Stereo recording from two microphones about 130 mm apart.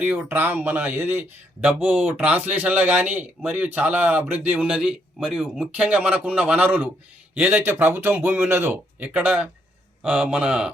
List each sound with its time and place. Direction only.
0.3 s speech: 15° right (ahead or behind)